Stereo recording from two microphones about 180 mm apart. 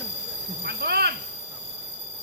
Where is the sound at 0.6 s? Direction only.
65° right (ahead or behind).